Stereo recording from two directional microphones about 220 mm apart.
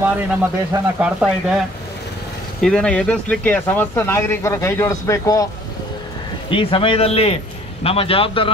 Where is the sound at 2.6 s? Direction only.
5° left (ahead or behind).